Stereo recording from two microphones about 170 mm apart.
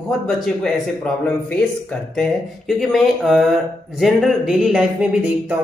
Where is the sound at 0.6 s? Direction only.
5° left (ahead or behind).